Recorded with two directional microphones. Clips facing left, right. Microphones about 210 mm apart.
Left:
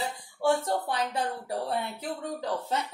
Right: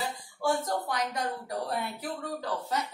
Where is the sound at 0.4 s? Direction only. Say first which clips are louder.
Left 3 dB; 30° left (ahead or behind).